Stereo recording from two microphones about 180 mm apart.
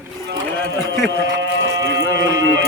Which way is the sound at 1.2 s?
90° right.